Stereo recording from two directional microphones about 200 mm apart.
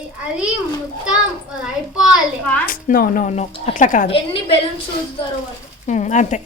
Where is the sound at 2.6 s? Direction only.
45° left (ahead or behind).